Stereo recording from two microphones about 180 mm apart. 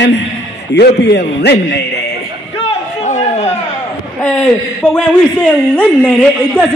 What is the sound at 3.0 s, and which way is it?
Chatter, 40° left (ahead or behind).